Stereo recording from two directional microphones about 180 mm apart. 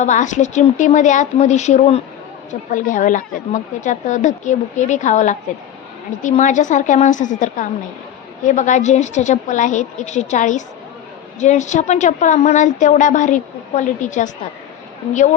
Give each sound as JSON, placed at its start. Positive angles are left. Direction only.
{"t": 0.0, "sound": "a woman's voice", "side_deg": 40}